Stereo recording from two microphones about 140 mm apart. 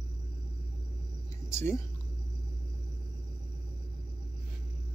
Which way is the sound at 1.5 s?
20° left (ahead or behind).